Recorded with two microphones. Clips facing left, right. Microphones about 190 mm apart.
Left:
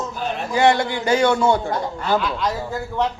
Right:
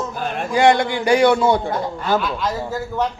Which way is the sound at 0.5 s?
15° right (ahead or behind).